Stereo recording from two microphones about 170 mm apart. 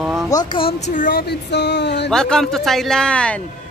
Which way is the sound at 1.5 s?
90° left.